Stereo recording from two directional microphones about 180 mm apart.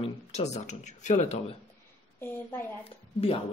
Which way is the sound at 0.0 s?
40° left (ahead or behind).